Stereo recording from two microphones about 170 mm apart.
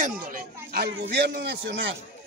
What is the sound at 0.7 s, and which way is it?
A man's voice, 70° right (ahead or behind).